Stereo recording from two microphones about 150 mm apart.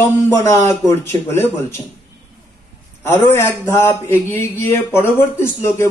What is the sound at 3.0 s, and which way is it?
Speech, 15° left (ahead or behind).